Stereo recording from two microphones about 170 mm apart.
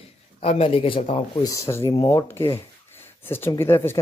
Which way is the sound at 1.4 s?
20° left (ahead or behind).